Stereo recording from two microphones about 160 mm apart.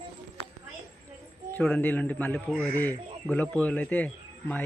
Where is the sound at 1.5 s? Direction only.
10° left (ahead or behind).